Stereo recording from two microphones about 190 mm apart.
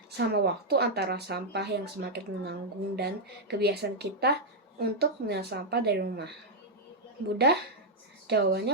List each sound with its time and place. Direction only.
0.2 s speech: 60° right (ahead or behind)
8.3 s speech: 60° right (ahead or behind)